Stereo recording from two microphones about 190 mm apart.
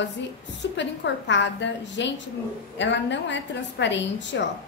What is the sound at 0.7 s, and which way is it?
A woman's voice, 70° left (ahead or behind).